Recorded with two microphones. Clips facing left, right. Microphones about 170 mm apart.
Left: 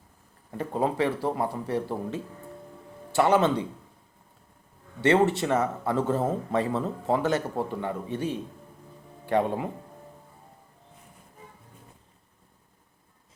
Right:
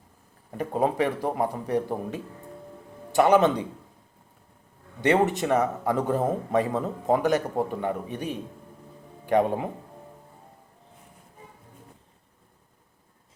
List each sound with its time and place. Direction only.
0.5 s speech: 15° right (ahead or behind)
4.9 s speech: 15° right (ahead or behind)